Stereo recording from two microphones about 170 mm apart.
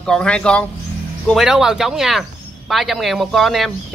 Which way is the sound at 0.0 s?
5° left (ahead or behind).